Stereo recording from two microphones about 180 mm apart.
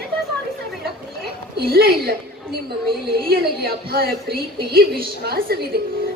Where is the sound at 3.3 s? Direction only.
60° right (ahead or behind).